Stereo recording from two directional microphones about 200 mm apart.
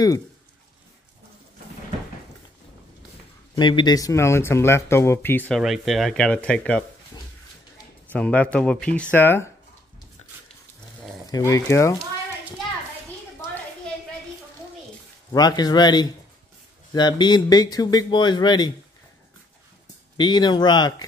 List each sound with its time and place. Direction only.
3.5 s speech: 20° left (ahead or behind)
5.6 s speech: centre (ahead or behind)
11.3 s speech: 15° left (ahead or behind)
15.3 s speech: 20° left (ahead or behind)
20.2 s speech: 20° left (ahead or behind)